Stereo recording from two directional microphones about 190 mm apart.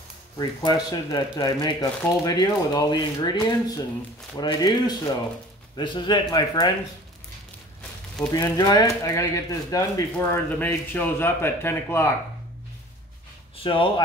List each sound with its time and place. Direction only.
0.4 s speech: 20° left (ahead or behind)
8.3 s speech: 20° left (ahead or behind)
13.6 s speech: 25° left (ahead or behind)